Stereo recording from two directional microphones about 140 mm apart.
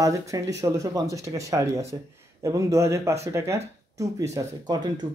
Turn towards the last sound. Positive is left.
turn(degrees=-30)  # may be behind; listen again after turning